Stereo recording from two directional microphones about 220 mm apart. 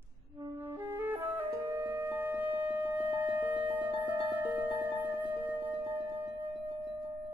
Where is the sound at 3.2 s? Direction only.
10° right (ahead or behind).